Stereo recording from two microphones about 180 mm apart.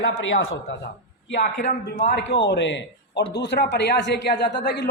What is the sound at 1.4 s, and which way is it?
Speech, 45° left (ahead or behind).